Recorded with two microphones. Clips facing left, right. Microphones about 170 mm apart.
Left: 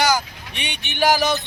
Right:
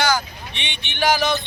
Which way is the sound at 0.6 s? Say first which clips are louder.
Left 3 dB; 40° left (ahead or behind).